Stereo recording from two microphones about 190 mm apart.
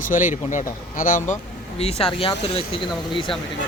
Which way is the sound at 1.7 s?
30° left (ahead or behind).